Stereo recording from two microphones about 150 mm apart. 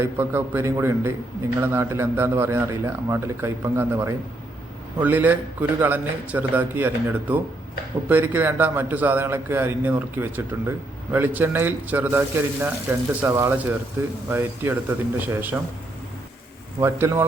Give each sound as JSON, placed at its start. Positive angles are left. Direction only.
{"t": 0.0, "sound": "a man's voice", "side_deg": -15}
{"t": 16.8, "sound": "a man's voice", "side_deg": -15}